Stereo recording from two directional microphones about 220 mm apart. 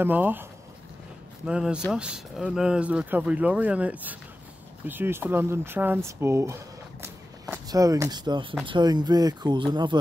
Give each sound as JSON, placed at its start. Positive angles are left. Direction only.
{"t": 0.0, "sound": "speech", "side_deg": -10}